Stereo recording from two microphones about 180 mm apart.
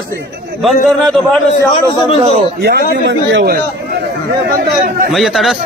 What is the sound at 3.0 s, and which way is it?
Speech, 80° right.